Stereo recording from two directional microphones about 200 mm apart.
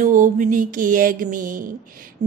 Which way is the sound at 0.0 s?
40° right (ahead or behind).